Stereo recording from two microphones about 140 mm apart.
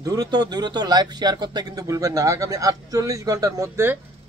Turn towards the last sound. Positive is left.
turn(degrees=-20)  # may be behind; listen again after turning